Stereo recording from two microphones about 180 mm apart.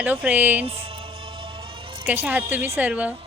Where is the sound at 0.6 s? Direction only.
30° right (ahead or behind).